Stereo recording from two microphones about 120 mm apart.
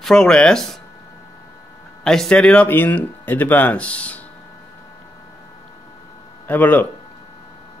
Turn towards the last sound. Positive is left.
turn(degrees=15)  # may be behind; listen again after turning